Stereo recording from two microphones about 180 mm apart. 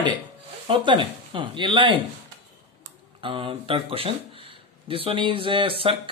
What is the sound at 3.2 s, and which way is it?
Speech, 30° right (ahead or behind).